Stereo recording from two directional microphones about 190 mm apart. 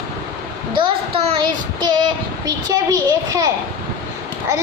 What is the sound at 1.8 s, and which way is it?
A child's voice, 20° right (ahead or behind).